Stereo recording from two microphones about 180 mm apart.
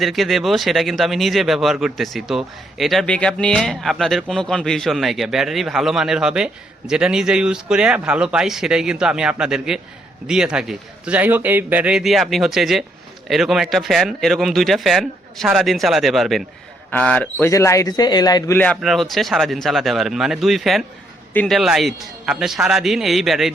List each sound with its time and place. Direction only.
0.0 s speech: centre (ahead or behind)